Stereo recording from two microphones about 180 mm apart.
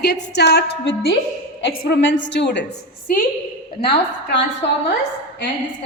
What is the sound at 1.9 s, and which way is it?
Speech, 90° left.